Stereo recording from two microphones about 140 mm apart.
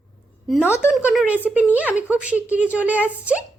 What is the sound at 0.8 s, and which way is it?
A woman's voice, 10° right (ahead or behind).